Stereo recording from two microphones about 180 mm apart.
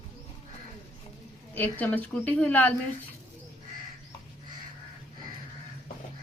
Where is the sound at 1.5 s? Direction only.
10° left (ahead or behind).